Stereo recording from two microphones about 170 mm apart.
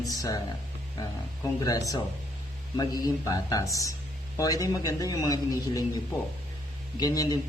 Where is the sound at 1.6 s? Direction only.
20° left (ahead or behind).